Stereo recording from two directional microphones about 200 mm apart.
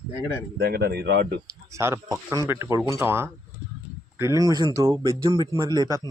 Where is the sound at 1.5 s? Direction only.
15° right (ahead or behind).